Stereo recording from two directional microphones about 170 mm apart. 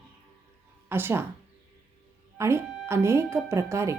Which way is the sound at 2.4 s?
15° right (ahead or behind).